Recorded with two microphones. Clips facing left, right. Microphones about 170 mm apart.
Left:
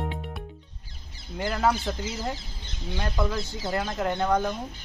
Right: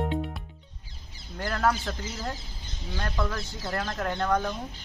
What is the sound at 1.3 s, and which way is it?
A woman's voice, 10° left (ahead or behind).